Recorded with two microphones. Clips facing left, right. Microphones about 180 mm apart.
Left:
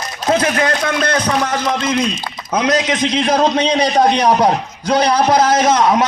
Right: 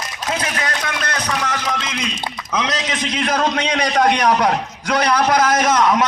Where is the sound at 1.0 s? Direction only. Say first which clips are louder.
Left 7 dB; 30° left (ahead or behind).